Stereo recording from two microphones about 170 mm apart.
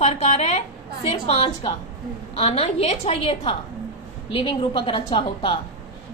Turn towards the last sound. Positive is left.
turn(degrees=30)  # may be behind; listen again after turning